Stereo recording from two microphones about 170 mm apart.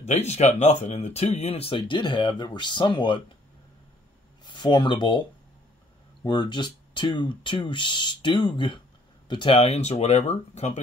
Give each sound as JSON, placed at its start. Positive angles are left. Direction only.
{"t": 0.0, "sound": "speech", "side_deg": 40}
{"t": 4.5, "sound": "speech", "side_deg": 25}
{"t": 6.2, "sound": "speech", "side_deg": 25}